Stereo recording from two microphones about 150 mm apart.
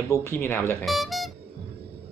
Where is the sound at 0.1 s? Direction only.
15° left (ahead or behind).